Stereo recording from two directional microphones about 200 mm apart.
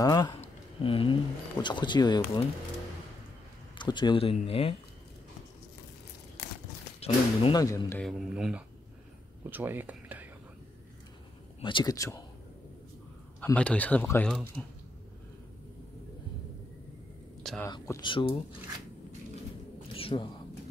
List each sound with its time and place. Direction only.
0.0 s speech: 20° left (ahead or behind)
3.7 s speech: 20° left (ahead or behind)
7.0 s speech: 30° left (ahead or behind)
7.6 s a man's voice: 15° left (ahead or behind)
8.0 s speech: centre (ahead or behind)
11.6 s speech: 20° left (ahead or behind)
13.4 s a man's voice: 5° left (ahead or behind)
17.4 s a sound: 5° left (ahead or behind)
17.6 s speech: 15° left (ahead or behind)
19.9 s bird: 25° left (ahead or behind)